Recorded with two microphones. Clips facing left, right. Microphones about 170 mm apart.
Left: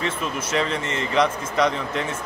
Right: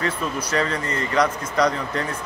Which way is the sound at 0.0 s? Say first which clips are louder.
Right 1 dB; 20° left (ahead or behind).